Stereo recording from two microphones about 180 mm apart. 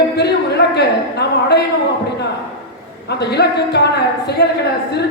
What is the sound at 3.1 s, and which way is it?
A woman's voice, 70° left (ahead or behind).